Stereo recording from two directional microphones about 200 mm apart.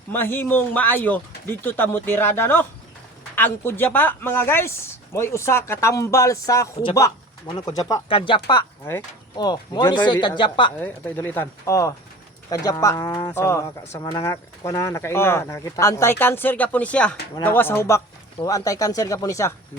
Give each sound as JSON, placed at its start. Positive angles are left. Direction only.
{"t": 0.1, "sound": "speech", "side_deg": 10}
{"t": 10.8, "sound": "speech", "side_deg": 10}